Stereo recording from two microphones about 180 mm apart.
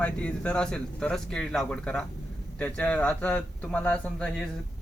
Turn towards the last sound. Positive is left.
turn(degrees=5)  # may be behind; listen again after turning